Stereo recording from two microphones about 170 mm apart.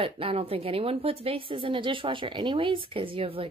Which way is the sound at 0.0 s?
35° right (ahead or behind).